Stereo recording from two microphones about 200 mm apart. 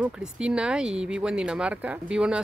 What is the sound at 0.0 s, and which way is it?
Speech, 5° right (ahead or behind).